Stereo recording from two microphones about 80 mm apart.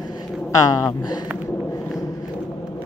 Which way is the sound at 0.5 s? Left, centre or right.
Left.